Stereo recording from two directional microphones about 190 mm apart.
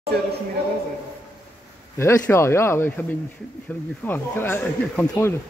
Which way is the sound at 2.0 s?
15° left (ahead or behind).